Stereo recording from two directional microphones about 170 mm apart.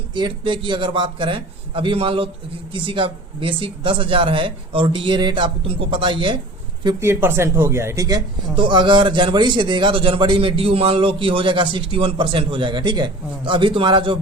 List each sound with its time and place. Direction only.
0.1 s a man's voice: 30° right (ahead or behind)
7.0 s a man's voice: 15° right (ahead or behind); by 14.2 s 30° right (ahead or behind)